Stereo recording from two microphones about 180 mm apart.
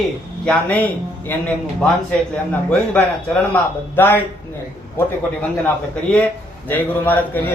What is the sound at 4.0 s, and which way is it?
Speech, 10° left (ahead or behind).